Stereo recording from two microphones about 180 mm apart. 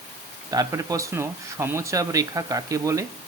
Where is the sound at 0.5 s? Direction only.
20° right (ahead or behind).